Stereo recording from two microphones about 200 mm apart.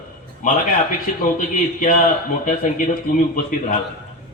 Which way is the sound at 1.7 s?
40° left (ahead or behind).